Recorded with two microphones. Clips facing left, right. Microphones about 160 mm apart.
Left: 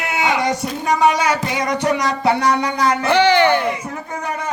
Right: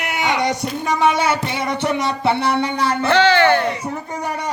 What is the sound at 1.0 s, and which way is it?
Speech, 25° right (ahead or behind).